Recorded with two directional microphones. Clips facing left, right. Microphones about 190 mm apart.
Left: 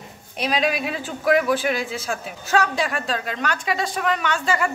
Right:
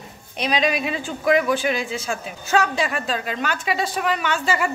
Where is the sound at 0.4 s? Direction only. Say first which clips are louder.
Right 1 dB; 5° left (ahead or behind).